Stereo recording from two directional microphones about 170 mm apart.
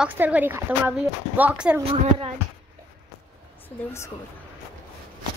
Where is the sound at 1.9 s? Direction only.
35° right (ahead or behind).